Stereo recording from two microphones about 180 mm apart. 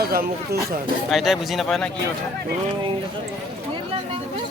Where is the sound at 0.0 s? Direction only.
55° right (ahead or behind).